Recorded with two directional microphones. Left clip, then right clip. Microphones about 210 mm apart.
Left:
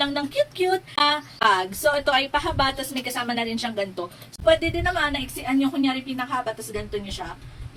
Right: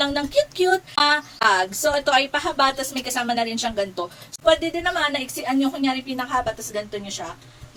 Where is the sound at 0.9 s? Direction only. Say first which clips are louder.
Right 1 dB; 20° left (ahead or behind).